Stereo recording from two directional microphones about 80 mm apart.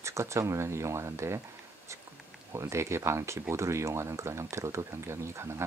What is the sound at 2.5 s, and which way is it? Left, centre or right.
Speech, right.